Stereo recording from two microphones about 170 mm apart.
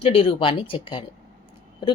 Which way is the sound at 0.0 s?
35° left (ahead or behind).